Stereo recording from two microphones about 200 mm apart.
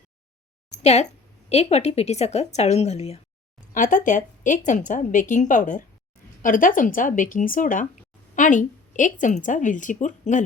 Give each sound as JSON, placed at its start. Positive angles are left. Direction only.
{"t": 0.8, "sound": "a woman's voice", "side_deg": 35}